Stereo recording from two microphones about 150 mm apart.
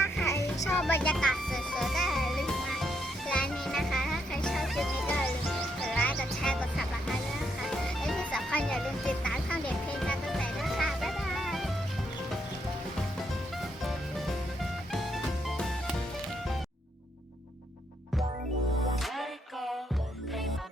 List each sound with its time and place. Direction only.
0.3 s music: 20° left (ahead or behind)
0.8 s speech: 10° left (ahead or behind)
1.1 s music: centre (ahead or behind)
19.0 s music: centre (ahead or behind)